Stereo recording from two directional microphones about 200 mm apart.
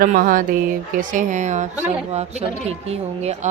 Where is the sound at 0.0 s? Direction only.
45° right (ahead or behind).